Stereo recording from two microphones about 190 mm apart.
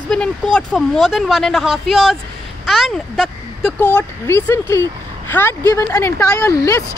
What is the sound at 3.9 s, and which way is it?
Speech, 10° left (ahead or behind).